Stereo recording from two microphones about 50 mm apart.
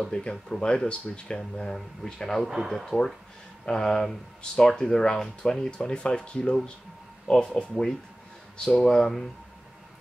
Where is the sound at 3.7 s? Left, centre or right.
Centre.